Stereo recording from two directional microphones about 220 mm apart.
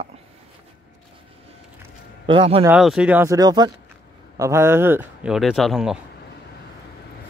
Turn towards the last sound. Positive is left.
turn(degrees=0)  # may be behind; listen again after turning